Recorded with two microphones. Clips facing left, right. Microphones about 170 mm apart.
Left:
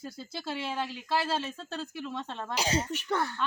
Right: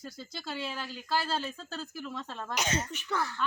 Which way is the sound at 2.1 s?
25° left (ahead or behind).